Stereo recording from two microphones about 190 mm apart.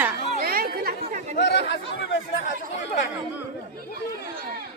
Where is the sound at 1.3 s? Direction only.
65° left (ahead or behind).